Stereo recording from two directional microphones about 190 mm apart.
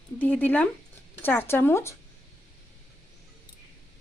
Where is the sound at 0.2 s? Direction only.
10° left (ahead or behind).